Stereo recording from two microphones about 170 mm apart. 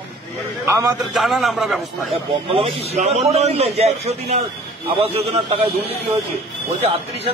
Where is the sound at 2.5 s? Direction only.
35° right (ahead or behind).